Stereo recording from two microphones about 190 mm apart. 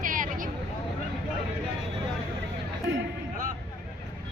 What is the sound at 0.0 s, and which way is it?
Vehicle, 45° right (ahead or behind).